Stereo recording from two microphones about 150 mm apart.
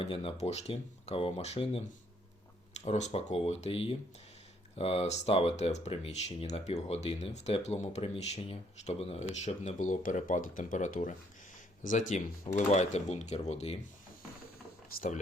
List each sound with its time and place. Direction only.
0.0 s speech: 35° left (ahead or behind)
2.8 s speech: 45° left (ahead or behind)